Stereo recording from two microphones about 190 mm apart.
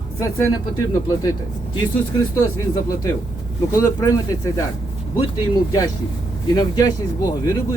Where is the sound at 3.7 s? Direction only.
15° left (ahead or behind).